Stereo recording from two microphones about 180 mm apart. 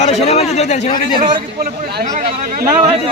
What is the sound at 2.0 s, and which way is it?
Speech, 45° right (ahead or behind).